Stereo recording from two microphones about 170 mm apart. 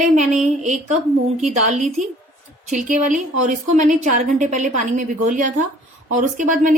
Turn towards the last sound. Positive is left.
turn(degrees=-50)  # may be behind; listen again after turning